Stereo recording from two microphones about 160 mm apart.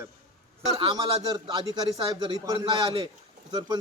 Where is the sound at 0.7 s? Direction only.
30° right (ahead or behind).